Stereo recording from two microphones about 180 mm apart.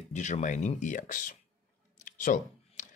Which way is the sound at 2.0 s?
45° left (ahead or behind).